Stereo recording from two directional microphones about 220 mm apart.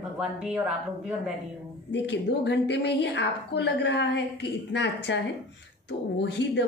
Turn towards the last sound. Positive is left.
turn(degrees=50)  # may be behind; listen again after turning